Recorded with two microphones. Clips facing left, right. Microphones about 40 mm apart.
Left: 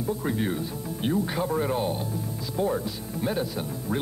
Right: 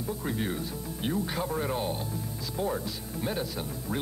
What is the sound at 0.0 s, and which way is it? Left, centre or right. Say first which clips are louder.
Speech: left 5 dB; centre.